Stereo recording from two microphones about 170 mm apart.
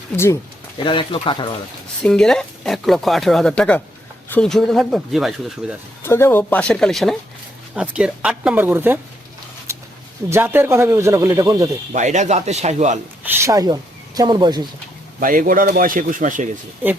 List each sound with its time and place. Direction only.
0.8 s speech: 30° left (ahead or behind)
2.0 s speech: 5° left (ahead or behind)
6.0 s speech: 15° left (ahead or behind); by 9.0 s 10° right (ahead or behind)
9.7 s a sound: 15° right (ahead or behind)
10.2 s speech: 15° right (ahead or behind)
11.9 s speech: 45° right (ahead or behind)
13.2 s speech: 20° right (ahead or behind)
15.2 s speech: 55° right (ahead or behind)